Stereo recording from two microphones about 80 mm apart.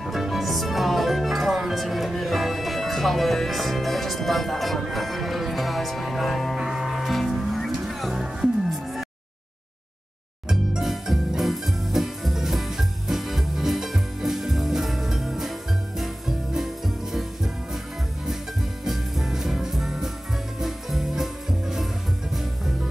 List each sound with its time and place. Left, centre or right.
0.0 s music: centre
10.5 s music: centre
18.9 s music: centre